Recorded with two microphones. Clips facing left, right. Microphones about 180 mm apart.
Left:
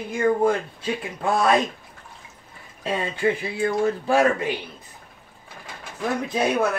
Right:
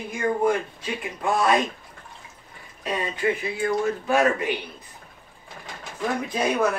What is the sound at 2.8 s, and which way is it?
Speech, 30° left (ahead or behind).